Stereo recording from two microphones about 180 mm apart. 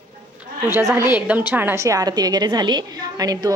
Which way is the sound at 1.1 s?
10° right (ahead or behind).